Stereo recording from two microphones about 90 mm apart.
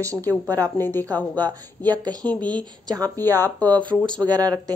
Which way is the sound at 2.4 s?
50° right (ahead or behind).